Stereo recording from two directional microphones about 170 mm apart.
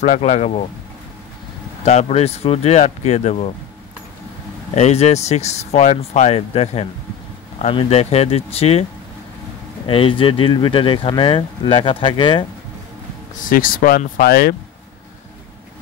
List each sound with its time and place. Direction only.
0.0 s speech: 45° left (ahead or behind)
1.9 s speech: 40° left (ahead or behind)
4.7 s speech: 40° left (ahead or behind)
9.8 s speech: 30° left (ahead or behind)
13.5 s speech: 55° left (ahead or behind)